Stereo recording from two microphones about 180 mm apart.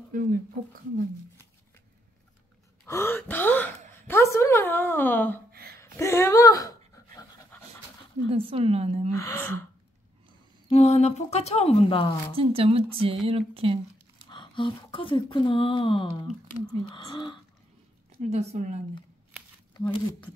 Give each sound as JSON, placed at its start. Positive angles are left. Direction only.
{"t": 0.1, "sound": "speech", "side_deg": -50}
{"t": 2.9, "sound": "a woman's voice", "side_deg": 15}
{"t": 5.5, "sound": "a sound", "side_deg": -60}
{"t": 5.8, "sound": "a sound", "side_deg": 15}
{"t": 8.5, "sound": "speech", "side_deg": -30}
{"t": 9.2, "sound": "speech", "side_deg": 15}
{"t": 10.7, "sound": "speech", "side_deg": 35}
{"t": 12.4, "sound": "speech", "side_deg": -30}
{"t": 14.3, "sound": "speech", "side_deg": 25}
{"t": 18.2, "sound": "speech", "side_deg": -40}
{"t": 19.7, "sound": "speech", "side_deg": 25}